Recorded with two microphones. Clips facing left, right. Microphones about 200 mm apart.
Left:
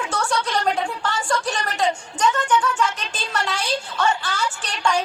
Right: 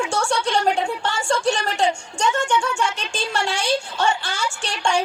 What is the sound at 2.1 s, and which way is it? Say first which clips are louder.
Music: left 1 dB; 25° right (ahead or behind).